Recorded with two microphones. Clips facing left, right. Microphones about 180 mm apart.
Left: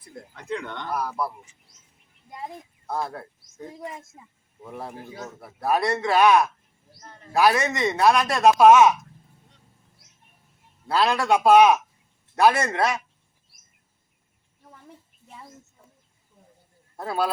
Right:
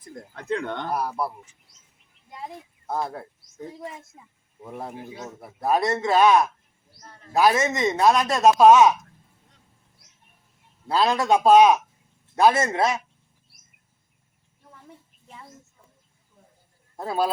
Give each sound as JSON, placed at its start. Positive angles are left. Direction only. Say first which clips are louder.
{"t": 0.3, "sound": "speech", "louder": "right 4 dB", "side_deg": -55}
{"t": 0.9, "sound": "speech", "louder": "left 1 dB", "side_deg": -30}
{"t": 2.9, "sound": "speech", "louder": "right 1 dB", "side_deg": -20}
{"t": 5.0, "sound": "speech", "louder": "even", "side_deg": -20}
{"t": 7.3, "sound": "speech", "louder": "right 1 dB", "side_deg": -20}
{"t": 10.8, "sound": "speech", "louder": "right 1 dB", "side_deg": -20}
{"t": 17.0, "sound": "speech", "louder": "right 1 dB", "side_deg": -20}